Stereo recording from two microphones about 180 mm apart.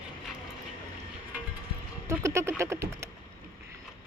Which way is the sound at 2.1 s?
15° right (ahead or behind).